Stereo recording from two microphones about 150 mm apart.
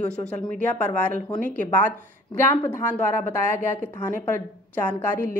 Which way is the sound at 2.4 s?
15° left (ahead or behind).